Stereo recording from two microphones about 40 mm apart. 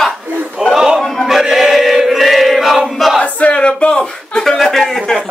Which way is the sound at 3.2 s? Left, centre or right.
Left.